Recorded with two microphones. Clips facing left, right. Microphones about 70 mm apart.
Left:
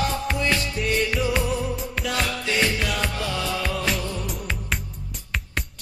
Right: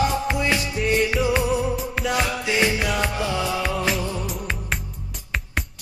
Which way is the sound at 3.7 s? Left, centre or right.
Centre.